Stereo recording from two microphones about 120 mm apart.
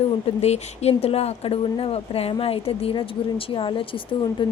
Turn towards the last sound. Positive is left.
turn(degrees=45)  # may be behind; listen again after turning